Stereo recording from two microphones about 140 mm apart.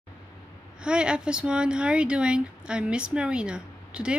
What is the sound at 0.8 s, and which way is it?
Speech, 5° right (ahead or behind).